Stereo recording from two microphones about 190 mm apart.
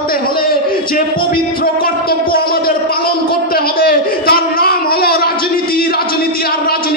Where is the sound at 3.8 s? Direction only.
55° left (ahead or behind).